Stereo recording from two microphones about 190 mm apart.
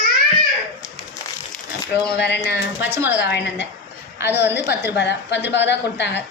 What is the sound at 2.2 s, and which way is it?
Speech, 65° left (ahead or behind).